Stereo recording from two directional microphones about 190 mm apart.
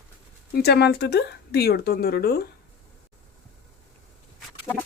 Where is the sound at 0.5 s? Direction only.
60° left (ahead or behind).